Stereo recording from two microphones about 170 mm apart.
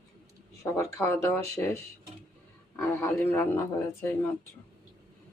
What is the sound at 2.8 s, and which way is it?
Speech, 15° left (ahead or behind).